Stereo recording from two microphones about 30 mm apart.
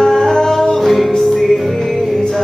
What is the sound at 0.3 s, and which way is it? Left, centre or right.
Music, centre.